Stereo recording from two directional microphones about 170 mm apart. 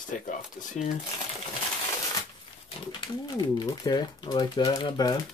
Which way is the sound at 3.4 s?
25° left (ahead or behind).